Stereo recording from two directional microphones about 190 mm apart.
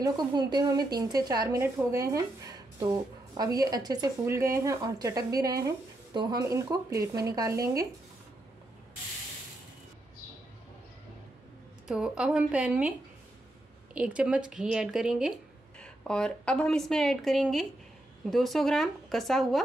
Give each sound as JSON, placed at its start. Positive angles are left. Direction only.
{"t": 0.0, "sound": "speech", "side_deg": -20}
{"t": 11.9, "sound": "a woman's voice", "side_deg": -5}
{"t": 13.9, "sound": "a woman's voice", "side_deg": -5}